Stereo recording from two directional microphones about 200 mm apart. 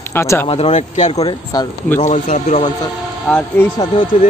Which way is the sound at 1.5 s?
15° left (ahead or behind).